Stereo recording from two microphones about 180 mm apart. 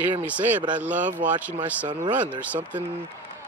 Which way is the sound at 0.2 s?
10° right (ahead or behind).